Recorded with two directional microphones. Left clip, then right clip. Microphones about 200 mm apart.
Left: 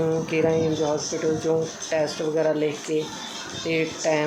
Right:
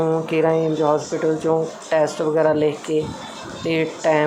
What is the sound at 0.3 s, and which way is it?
Speech, 10° right (ahead or behind).